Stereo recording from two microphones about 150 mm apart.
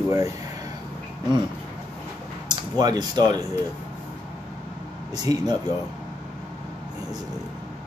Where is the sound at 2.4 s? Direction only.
25° right (ahead or behind).